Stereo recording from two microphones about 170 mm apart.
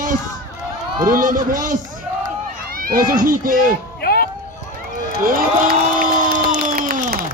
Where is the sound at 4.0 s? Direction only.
65° left (ahead or behind).